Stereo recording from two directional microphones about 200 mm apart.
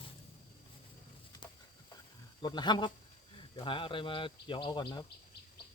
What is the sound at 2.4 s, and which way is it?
Speech, 20° left (ahead or behind).